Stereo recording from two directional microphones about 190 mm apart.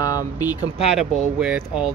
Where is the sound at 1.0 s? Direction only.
5° right (ahead or behind).